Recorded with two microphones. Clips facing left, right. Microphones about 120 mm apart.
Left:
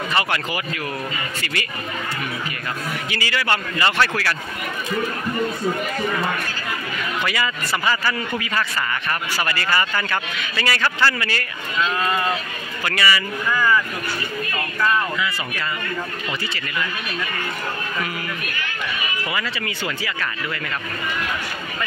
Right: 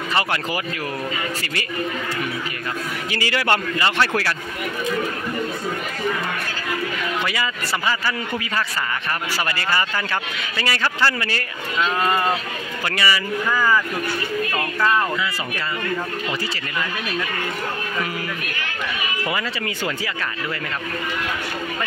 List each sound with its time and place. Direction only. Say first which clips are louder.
3.1 s a man's voice: right 3 dB; 45° right (ahead or behind)
3.8 s speech: even; 20° right (ahead or behind)
7.2 s speech: left 1 dB; 25° right (ahead or behind)
9.5 s speech: left 2 dB; 25° right (ahead or behind)
13.5 s speech: even; 10° right (ahead or behind)
19.3 s speech: right 1 dB; 35° right (ahead or behind)